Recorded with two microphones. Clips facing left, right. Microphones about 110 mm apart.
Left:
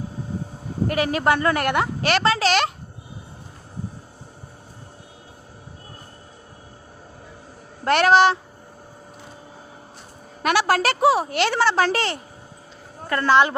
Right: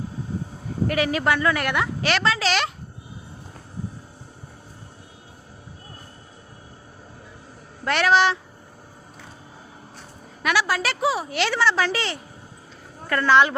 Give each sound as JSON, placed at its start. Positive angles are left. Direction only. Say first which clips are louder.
{"t": 0.9, "sound": "a woman's voice", "louder": "left 2 dB", "side_deg": 40}
{"t": 7.9, "sound": "a woman's voice", "louder": "left 4 dB", "side_deg": 50}
{"t": 10.4, "sound": "a woman's voice", "louder": "left 4 dB", "side_deg": 55}
{"t": 13.1, "sound": "a woman's voice", "louder": "even", "side_deg": 35}